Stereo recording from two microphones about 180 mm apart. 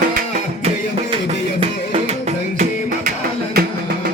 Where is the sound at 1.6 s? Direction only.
35° right (ahead or behind).